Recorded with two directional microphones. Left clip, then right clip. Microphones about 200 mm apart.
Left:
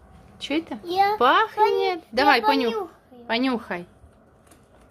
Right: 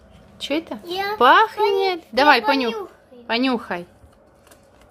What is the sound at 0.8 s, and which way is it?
Speech, 20° left (ahead or behind).